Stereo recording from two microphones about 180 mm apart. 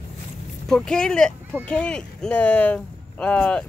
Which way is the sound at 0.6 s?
5° left (ahead or behind).